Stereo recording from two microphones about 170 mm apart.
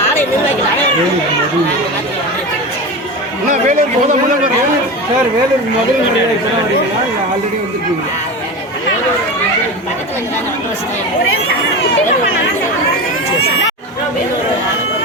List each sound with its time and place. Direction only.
3.5 s speech: 45° right (ahead or behind)